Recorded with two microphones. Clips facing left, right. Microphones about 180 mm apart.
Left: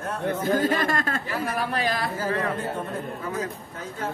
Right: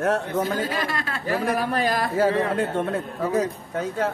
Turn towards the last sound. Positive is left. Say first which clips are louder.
# right 6 dB
turn(degrees=-75)  # may be behind; listen again after turning